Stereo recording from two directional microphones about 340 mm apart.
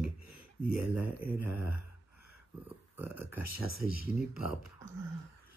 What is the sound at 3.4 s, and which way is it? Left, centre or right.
Speech, left.